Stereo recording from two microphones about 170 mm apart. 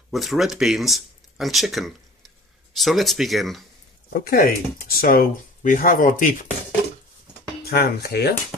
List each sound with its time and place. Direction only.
0.1 s speech: centre (ahead or behind)
4.1 s speech: 65° left (ahead or behind)
7.6 s speech: 70° left (ahead or behind)